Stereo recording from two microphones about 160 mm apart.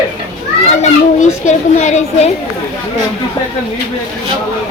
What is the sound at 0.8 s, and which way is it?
A child's voice, 45° left (ahead or behind).